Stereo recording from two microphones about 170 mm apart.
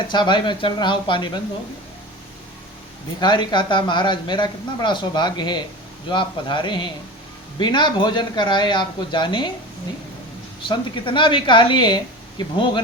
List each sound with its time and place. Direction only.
0.1 s speech: 25° left (ahead or behind)
3.2 s speech: 25° left (ahead or behind)
10.7 s speech: 30° left (ahead or behind)